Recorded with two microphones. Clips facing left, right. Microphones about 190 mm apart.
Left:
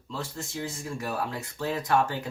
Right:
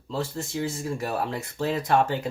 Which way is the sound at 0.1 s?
30° right (ahead or behind).